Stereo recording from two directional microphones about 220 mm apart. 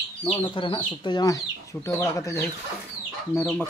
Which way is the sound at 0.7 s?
20° left (ahead or behind).